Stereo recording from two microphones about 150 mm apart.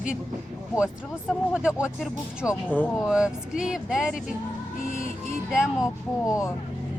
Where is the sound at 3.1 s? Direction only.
5° right (ahead or behind).